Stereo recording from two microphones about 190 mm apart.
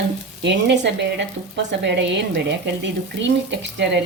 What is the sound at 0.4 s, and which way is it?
Speech, 65° right (ahead or behind).